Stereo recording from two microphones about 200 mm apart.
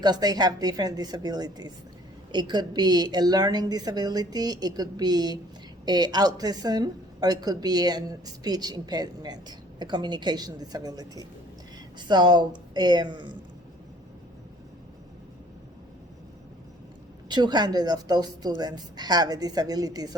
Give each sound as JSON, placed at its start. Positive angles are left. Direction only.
{"t": 0.0, "sound": "a woman's voice", "side_deg": -20}
{"t": 17.2, "sound": "a woman's voice", "side_deg": -20}